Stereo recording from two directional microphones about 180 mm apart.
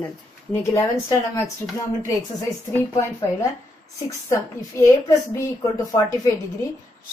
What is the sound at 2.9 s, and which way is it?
A woman's voice, 15° left (ahead or behind).